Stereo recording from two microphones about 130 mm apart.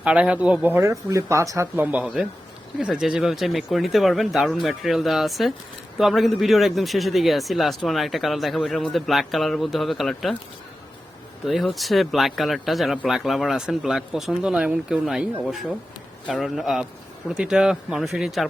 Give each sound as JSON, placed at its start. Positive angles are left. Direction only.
{"t": 0.0, "sound": "speech", "side_deg": -10}
{"t": 1.8, "sound": "speech", "side_deg": -10}
{"t": 11.4, "sound": "speech", "side_deg": 0}